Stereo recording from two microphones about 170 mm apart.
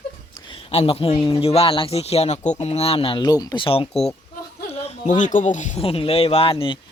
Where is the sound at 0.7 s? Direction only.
35° left (ahead or behind).